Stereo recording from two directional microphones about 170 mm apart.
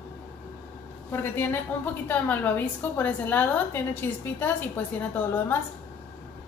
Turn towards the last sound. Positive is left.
turn(degrees=10)  # may be behind; listen again after turning